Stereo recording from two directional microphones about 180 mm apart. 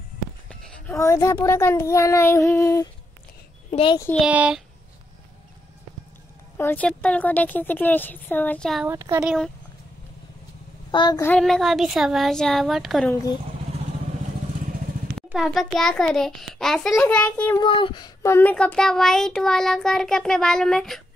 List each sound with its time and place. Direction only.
0.5 s a child's voice: 10° left (ahead or behind)
3.7 s a child's voice: 30° left (ahead or behind)
4.2 s speech: 5° right (ahead or behind)
6.5 s a child's voice: 10° left (ahead or behind)
8.8 s speech: 15° right (ahead or behind)
9.2 s child singing: 5° right (ahead or behind)
10.9 s speech: 25° left (ahead or behind)
11.2 s child singing: 5° left (ahead or behind)
15.1 s child singing: centre (ahead or behind)
17.6 s child singing: 30° left (ahead or behind); by 21.0 s centre (ahead or behind)